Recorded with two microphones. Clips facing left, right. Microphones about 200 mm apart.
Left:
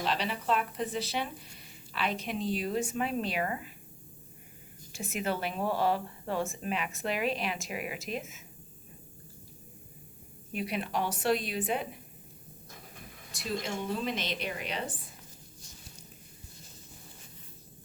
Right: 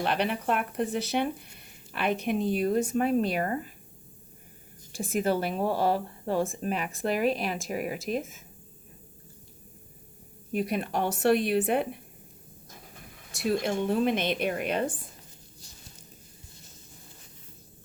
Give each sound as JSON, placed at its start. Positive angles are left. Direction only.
{"t": 0.0, "sound": "speech", "side_deg": -60}
{"t": 4.9, "sound": "speech", "side_deg": -35}
{"t": 10.5, "sound": "a woman's voice", "side_deg": -45}
{"t": 13.4, "sound": "a woman's voice", "side_deg": -60}